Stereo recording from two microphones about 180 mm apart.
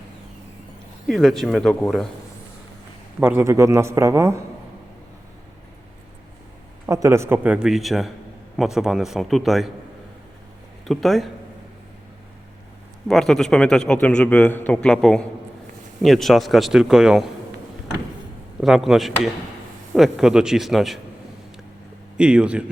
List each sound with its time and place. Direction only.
1.0 s a man's voice: centre (ahead or behind)
3.2 s speech: 10° right (ahead or behind)
6.8 s a man's voice: 20° right (ahead or behind); by 9.6 s centre (ahead or behind)
10.8 s a man's voice: centre (ahead or behind)
13.1 s a man's voice: centre (ahead or behind)
18.6 s a man's voice: centre (ahead or behind)
22.2 s a man's voice: 5° right (ahead or behind)